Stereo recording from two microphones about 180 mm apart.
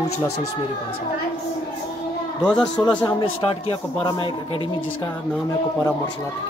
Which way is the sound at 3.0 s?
30° left (ahead or behind).